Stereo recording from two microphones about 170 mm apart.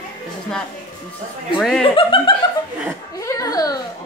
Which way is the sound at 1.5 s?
Centre (ahead or behind).